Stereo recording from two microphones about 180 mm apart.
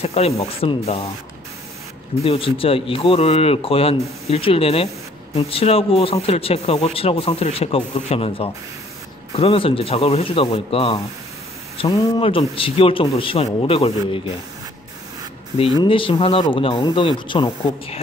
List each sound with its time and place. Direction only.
0.0 s a man's voice: 35° left (ahead or behind)
2.2 s a man's voice: 30° left (ahead or behind)
15.8 s speech: 30° left (ahead or behind)